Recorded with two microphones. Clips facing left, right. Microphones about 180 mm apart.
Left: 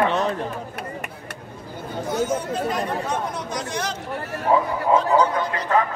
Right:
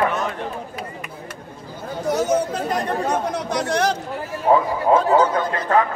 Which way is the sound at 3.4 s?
65° right (ahead or behind).